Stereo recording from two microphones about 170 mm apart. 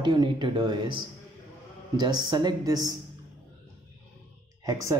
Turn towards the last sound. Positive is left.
turn(degrees=-20)  # may be behind; listen again after turning